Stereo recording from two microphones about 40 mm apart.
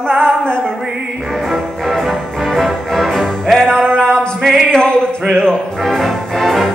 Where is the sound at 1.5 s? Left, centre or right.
Centre.